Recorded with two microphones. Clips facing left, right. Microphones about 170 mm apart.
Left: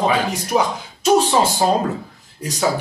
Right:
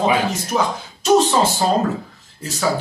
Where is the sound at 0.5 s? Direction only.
15° left (ahead or behind).